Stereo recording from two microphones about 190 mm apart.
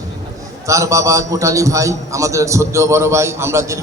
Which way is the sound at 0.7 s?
15° right (ahead or behind).